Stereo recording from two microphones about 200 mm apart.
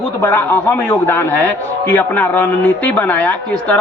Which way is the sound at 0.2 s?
10° left (ahead or behind).